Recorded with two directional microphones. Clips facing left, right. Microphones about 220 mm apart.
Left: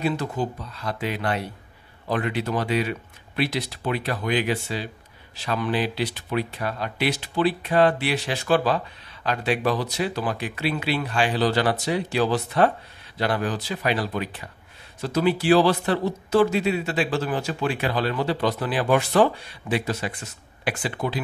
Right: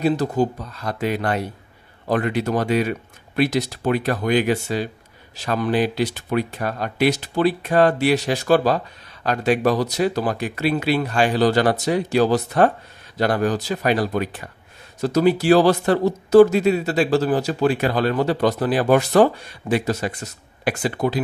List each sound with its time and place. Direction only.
0.0 s speech: 40° right (ahead or behind)